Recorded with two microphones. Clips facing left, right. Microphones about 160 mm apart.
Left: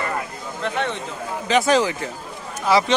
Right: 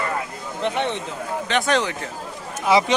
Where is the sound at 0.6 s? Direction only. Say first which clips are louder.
Right 2 dB; 20° right (ahead or behind).